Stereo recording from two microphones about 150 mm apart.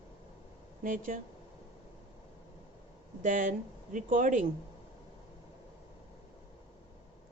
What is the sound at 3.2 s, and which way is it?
Speech, 60° right (ahead or behind).